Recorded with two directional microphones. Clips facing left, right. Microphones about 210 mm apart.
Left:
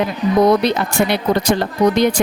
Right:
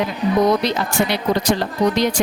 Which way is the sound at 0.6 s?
55° left (ahead or behind).